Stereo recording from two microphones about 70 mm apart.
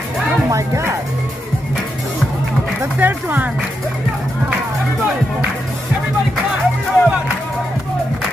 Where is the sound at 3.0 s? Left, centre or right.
Right.